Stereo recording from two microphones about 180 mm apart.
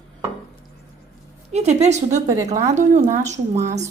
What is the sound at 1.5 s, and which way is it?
A woman's voice, 35° right (ahead or behind).